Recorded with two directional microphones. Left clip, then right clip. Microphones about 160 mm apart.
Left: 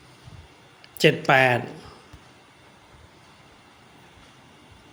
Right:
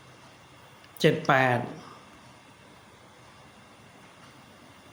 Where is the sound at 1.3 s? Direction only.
40° left (ahead or behind).